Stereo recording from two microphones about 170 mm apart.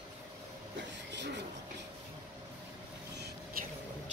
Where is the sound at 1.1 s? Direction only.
90° right.